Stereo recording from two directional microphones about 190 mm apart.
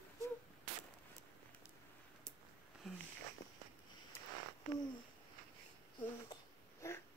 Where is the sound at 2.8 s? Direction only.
Centre (ahead or behind).